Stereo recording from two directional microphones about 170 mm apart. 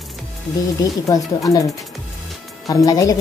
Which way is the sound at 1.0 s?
20° left (ahead or behind).